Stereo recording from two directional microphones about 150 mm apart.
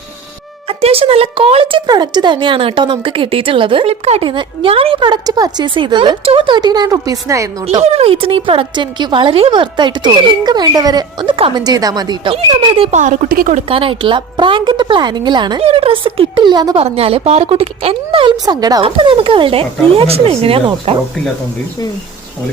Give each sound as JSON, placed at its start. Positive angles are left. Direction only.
{"t": 0.7, "sound": "a woman's voice", "side_deg": -40}
{"t": 7.8, "sound": "a woman's voice", "side_deg": -45}
{"t": 13.0, "sound": "a woman's voice", "side_deg": -65}
{"t": 13.7, "sound": "a woman's voice", "side_deg": -35}
{"t": 16.8, "sound": "a woman's voice", "side_deg": -40}
{"t": 18.8, "sound": "a woman's voice", "side_deg": -35}